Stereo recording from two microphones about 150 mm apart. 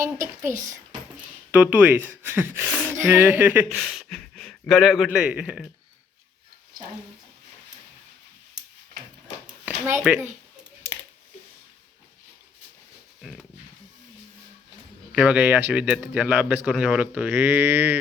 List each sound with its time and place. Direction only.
0.0 s speech: 20° right (ahead or behind)
3.8 s speech: 5° left (ahead or behind)
9.5 s a sound: 10° right (ahead or behind)
15.1 s speech: 5° right (ahead or behind)